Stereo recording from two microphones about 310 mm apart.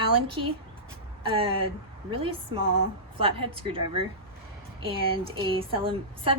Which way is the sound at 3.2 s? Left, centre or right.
Centre.